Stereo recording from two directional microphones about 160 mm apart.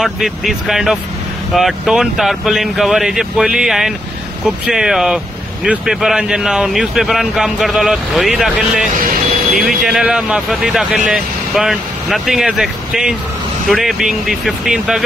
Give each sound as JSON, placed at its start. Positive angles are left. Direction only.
{"t": 0.0, "sound": "speech", "side_deg": 0}